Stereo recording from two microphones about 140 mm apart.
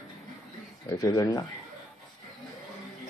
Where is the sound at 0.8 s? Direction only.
25° left (ahead or behind).